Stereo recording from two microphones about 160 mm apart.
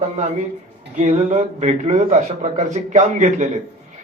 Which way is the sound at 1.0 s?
45° right (ahead or behind).